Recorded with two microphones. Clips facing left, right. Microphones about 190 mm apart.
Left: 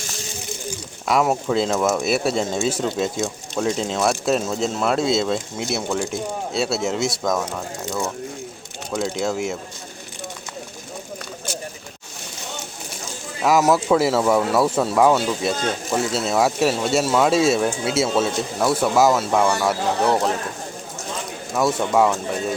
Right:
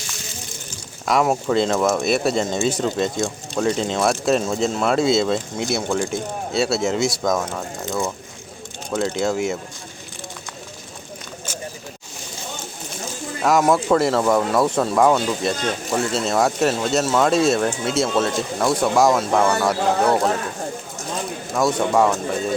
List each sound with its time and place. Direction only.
1.0 s speech: centre (ahead or behind)
13.4 s speech: 5° left (ahead or behind)
21.5 s speech: 5° left (ahead or behind)